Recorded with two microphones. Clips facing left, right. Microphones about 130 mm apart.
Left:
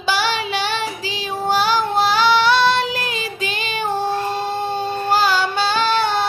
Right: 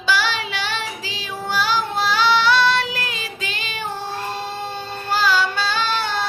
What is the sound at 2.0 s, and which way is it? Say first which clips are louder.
Child singing: left 3 dB; 15° left (ahead or behind).